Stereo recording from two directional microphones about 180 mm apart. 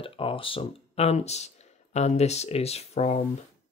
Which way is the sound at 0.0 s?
30° left (ahead or behind).